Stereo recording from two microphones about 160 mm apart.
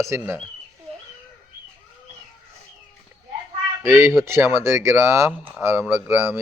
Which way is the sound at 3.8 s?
15° right (ahead or behind).